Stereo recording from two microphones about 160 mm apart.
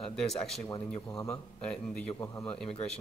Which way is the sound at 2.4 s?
5° left (ahead or behind).